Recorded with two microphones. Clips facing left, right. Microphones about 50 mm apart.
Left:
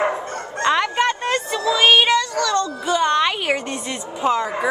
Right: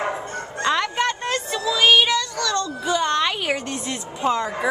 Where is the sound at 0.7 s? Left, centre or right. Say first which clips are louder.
Left 3 dB; centre.